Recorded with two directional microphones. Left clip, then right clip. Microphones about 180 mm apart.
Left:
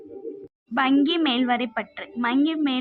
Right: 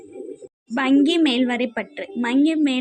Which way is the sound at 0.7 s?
20° right (ahead or behind).